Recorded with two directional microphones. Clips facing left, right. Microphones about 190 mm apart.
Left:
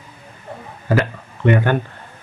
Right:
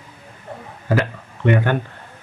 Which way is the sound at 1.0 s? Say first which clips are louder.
Left 2 dB; 45° left (ahead or behind).